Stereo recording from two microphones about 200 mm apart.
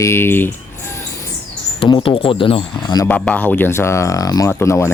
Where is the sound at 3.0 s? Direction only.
5° left (ahead or behind).